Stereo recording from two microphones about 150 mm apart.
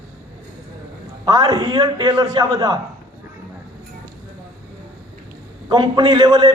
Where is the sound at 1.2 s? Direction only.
25° right (ahead or behind).